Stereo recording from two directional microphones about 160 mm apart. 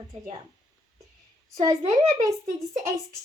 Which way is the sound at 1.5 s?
20° right (ahead or behind).